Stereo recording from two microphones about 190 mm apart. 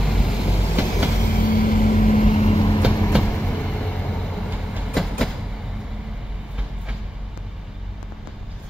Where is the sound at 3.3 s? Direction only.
5° left (ahead or behind).